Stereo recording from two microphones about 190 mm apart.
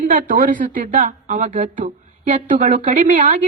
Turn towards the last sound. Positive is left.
turn(degrees=-40)  # may be behind; listen again after turning